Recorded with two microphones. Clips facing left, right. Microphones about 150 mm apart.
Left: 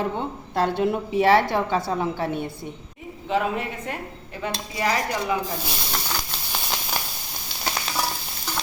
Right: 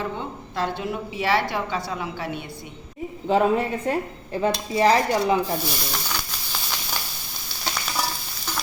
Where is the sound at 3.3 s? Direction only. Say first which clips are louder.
Right 5 dB; 35° right (ahead or behind).